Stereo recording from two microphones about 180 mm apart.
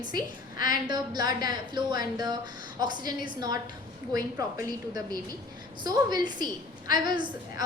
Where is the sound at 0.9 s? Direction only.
25° right (ahead or behind).